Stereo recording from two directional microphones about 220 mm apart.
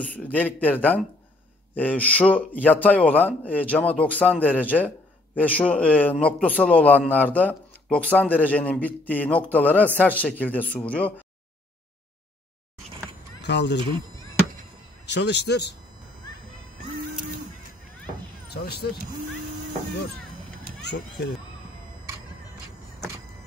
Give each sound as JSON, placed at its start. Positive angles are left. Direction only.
{"t": 0.0, "sound": "a man's voice", "side_deg": 5}
{"t": 13.4, "sound": "speech", "side_deg": 50}
{"t": 15.0, "sound": "a man's voice", "side_deg": 50}
{"t": 18.5, "sound": "a man's voice", "side_deg": 45}
{"t": 20.8, "sound": "a man's voice", "side_deg": 50}